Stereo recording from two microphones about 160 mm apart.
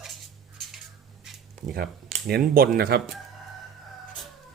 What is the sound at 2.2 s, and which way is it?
Speech, 70° right (ahead or behind).